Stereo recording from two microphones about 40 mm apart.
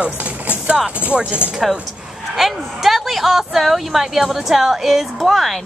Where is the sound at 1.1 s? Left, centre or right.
Centre.